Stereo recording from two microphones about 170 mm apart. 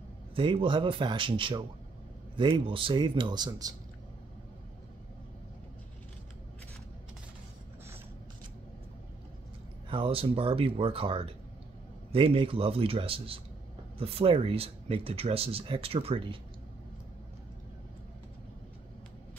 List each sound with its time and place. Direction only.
0.4 s speech: 30° right (ahead or behind)
9.8 s speech: 30° right (ahead or behind)